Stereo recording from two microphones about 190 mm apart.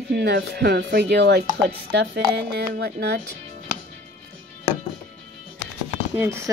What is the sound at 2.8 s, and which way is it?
Speech, 60° right (ahead or behind).